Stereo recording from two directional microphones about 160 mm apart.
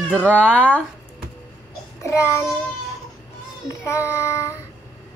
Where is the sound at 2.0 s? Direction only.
20° left (ahead or behind).